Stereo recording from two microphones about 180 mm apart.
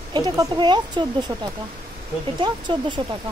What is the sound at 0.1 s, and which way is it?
Speech, 25° right (ahead or behind).